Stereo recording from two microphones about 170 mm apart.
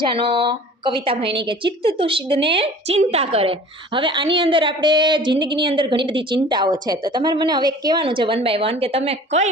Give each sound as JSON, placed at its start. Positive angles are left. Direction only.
{"t": 0.0, "sound": "a woman's voice", "side_deg": -30}